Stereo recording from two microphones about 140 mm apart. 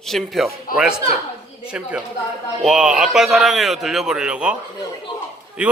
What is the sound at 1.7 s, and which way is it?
A man's voice, 5° right (ahead or behind).